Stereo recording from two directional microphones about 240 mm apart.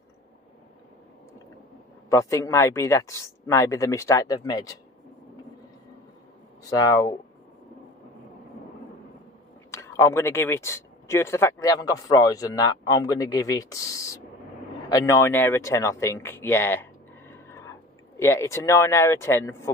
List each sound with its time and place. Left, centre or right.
2.0 s speech: centre
6.8 s speech: centre
9.7 s speech: centre
17.3 s a sound: centre
18.2 s speech: centre